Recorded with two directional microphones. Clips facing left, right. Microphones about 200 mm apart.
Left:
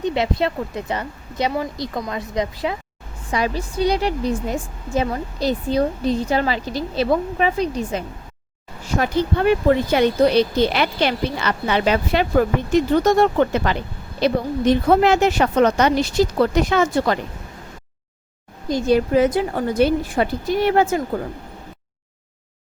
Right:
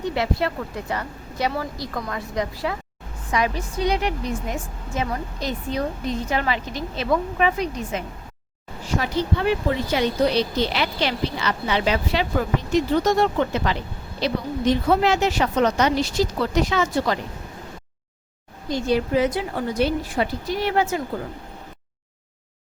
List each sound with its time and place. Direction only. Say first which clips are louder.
0.0 s speech: left 3 dB; 20° left (ahead or behind)
3.3 s a woman's voice: left 2 dB; 30° left (ahead or behind)
9.0 s speech: left 4 dB; 50° left (ahead or behind)
18.7 s speech: left 4 dB; 50° left (ahead or behind)